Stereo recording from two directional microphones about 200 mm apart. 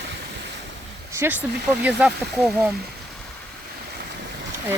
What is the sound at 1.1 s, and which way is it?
Speech, 10° right (ahead or behind).